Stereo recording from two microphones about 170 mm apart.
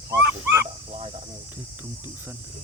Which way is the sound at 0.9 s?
35° right (ahead or behind).